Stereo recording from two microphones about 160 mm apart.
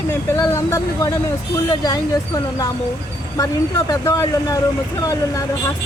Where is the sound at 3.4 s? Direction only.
20° left (ahead or behind).